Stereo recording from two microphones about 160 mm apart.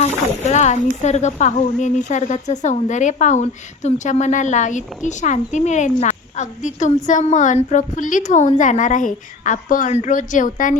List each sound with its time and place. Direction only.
0.0 s speech: 45° left (ahead or behind)